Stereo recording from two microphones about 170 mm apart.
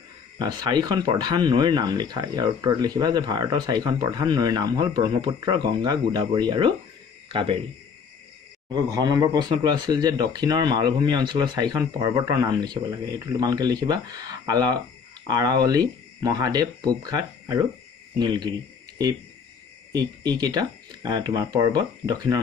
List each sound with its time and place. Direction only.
0.4 s speech: 25° right (ahead or behind)
8.7 s speech: 20° right (ahead or behind)
20.0 s speech: 20° right (ahead or behind)